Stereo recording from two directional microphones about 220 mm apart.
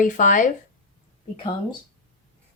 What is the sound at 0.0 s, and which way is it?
Speech, 35° left (ahead or behind).